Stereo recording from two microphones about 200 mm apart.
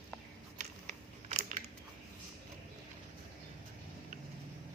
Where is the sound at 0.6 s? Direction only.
35° right (ahead or behind).